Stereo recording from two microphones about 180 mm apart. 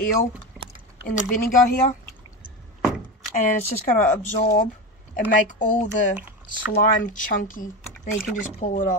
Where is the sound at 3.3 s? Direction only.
45° left (ahead or behind).